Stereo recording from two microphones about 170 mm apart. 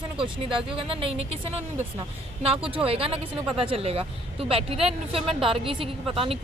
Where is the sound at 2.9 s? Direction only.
35° right (ahead or behind).